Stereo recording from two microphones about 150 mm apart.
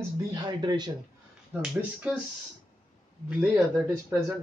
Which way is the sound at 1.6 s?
10° right (ahead or behind).